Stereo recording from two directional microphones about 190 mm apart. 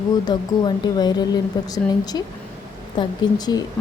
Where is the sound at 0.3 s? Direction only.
20° left (ahead or behind).